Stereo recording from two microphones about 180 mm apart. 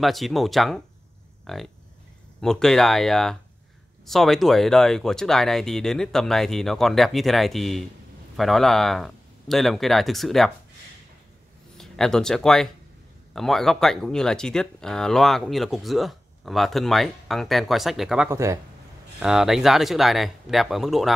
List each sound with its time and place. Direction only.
0.0 s speech: centre (ahead or behind)
11.7 s speech: 5° left (ahead or behind)
18.3 s speech: 15° right (ahead or behind)
19.1 s speech: 5° right (ahead or behind)